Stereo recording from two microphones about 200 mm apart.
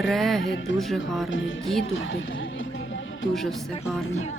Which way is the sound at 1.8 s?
75° left (ahead or behind).